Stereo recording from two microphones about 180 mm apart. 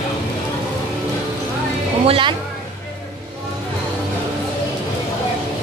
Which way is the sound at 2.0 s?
30° right (ahead or behind).